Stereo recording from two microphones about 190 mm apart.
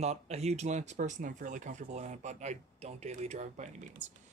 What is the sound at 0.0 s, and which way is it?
Speech, 35° right (ahead or behind).